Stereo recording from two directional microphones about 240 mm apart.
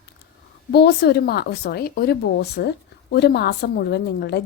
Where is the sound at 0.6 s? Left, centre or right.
Left.